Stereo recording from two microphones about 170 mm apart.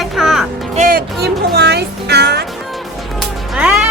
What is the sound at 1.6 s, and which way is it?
Music, 75° right (ahead or behind).